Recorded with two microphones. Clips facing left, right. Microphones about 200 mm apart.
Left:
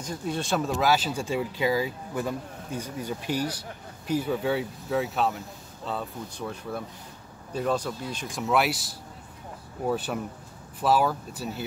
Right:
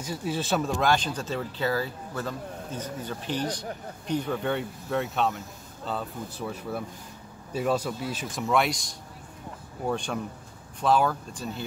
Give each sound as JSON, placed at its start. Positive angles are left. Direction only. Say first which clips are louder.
{"t": 0.0, "sound": "a man's voice", "louder": "even", "side_deg": -5}